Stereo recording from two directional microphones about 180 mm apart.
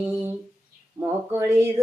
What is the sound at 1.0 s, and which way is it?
Speech, 15° right (ahead or behind).